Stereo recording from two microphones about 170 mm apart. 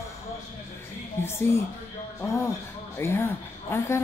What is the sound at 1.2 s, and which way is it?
Speech, 15° left (ahead or behind).